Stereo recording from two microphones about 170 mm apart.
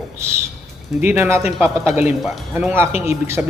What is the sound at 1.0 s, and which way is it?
A man's voice, 15° right (ahead or behind).